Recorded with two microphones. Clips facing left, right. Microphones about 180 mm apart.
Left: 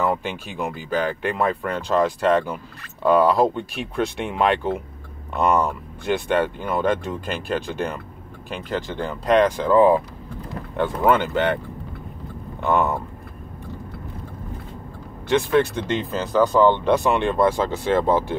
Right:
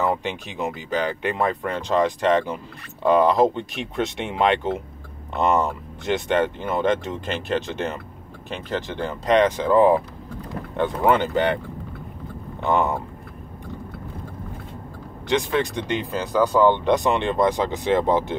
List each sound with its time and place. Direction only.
0.0 s speech: 20° right (ahead or behind)
12.6 s speech: 15° right (ahead or behind)
15.2 s speech: 15° right (ahead or behind)